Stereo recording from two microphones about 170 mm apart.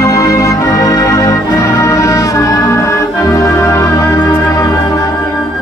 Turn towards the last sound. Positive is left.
turn(degrees=20)  # may be behind; listen again after turning